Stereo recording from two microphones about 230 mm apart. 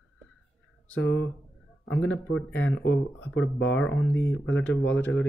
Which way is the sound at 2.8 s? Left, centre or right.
Left.